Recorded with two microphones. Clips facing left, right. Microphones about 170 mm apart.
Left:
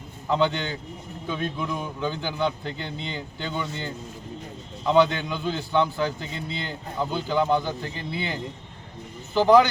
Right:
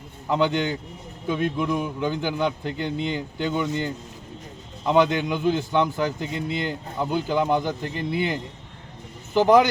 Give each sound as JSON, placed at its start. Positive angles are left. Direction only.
{"t": 0.3, "sound": "a man's voice", "side_deg": -10}
{"t": 9.3, "sound": "a man's voice", "side_deg": -15}